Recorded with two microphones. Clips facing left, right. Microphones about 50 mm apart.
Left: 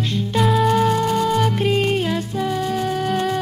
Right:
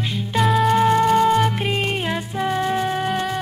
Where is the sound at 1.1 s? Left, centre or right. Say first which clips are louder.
Right 3 dB; right.